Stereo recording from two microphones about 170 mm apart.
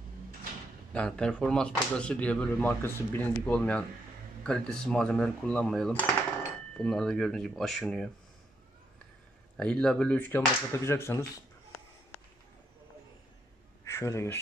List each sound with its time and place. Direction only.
0.9 s speech: 5° left (ahead or behind)
9.6 s speech: 5° left (ahead or behind)
13.8 s speech: 20° left (ahead or behind)